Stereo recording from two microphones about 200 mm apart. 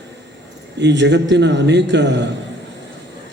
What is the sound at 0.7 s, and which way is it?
A man's voice, 60° right (ahead or behind).